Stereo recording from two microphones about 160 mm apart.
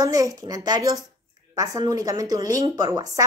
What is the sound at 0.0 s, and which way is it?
A woman's voice, 20° right (ahead or behind).